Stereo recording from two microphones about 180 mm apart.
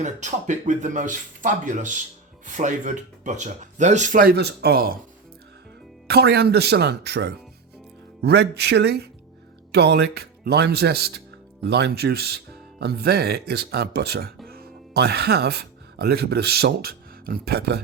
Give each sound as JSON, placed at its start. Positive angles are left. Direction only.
{"t": 0.0, "sound": "speech", "side_deg": -40}
{"t": 6.1, "sound": "speech", "side_deg": -60}